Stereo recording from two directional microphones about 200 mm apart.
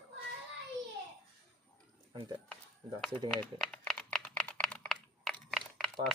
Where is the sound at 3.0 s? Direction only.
5° left (ahead or behind).